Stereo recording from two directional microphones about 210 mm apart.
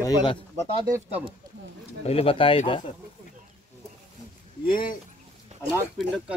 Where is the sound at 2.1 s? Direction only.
25° left (ahead or behind).